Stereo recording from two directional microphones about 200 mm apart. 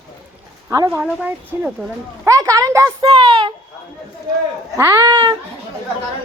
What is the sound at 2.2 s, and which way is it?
Speech, 15° right (ahead or behind).